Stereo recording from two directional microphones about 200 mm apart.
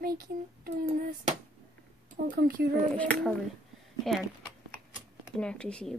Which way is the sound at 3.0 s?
5° left (ahead or behind).